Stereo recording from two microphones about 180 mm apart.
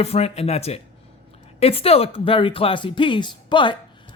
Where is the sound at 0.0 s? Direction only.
35° left (ahead or behind).